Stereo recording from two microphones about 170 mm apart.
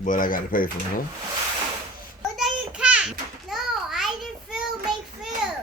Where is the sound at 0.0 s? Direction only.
50° left (ahead or behind).